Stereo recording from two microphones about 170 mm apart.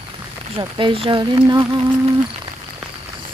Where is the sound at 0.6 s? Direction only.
30° right (ahead or behind).